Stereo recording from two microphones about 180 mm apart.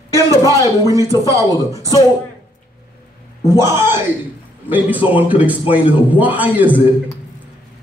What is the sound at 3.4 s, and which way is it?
A man's voice, 15° right (ahead or behind).